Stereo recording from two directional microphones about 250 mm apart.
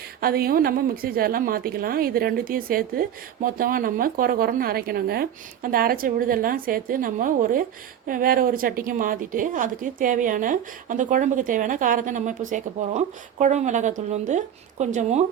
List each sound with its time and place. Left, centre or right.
0.2 s a woman's voice: right